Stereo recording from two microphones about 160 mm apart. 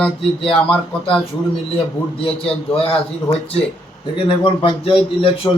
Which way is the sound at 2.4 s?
35° left (ahead or behind).